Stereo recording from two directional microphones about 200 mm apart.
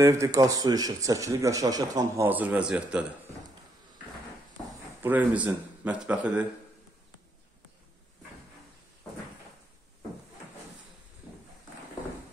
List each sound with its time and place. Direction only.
0.0 s speech: 15° right (ahead or behind)
5.0 s speech: 5° right (ahead or behind)